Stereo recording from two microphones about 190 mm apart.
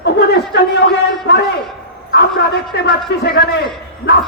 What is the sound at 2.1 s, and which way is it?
A man's voice, 60° left (ahead or behind).